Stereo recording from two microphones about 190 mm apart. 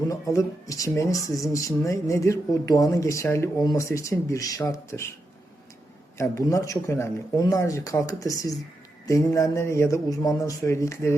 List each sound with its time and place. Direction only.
0.1 s speech: 15° left (ahead or behind)
6.1 s speech: 15° left (ahead or behind)